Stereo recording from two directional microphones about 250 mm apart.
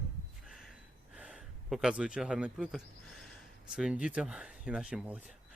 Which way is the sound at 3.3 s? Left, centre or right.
Centre.